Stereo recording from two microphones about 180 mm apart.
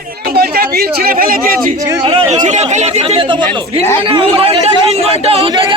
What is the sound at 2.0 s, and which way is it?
Speech, 35° right (ahead or behind).